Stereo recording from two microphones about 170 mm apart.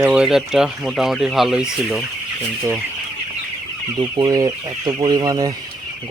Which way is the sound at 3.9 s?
25° right (ahead or behind).